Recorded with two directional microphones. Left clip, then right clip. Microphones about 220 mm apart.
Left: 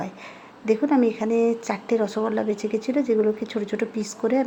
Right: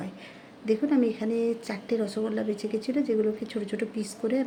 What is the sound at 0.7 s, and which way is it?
Speech, 15° left (ahead or behind).